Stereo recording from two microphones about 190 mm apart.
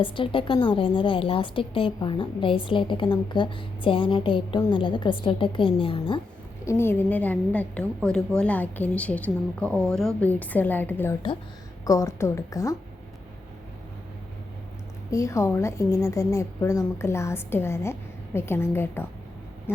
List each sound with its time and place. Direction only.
0.0 s a woman's voice: 25° left (ahead or behind)
6.7 s a woman's voice: 10° left (ahead or behind)
15.1 s a woman's voice: 15° left (ahead or behind)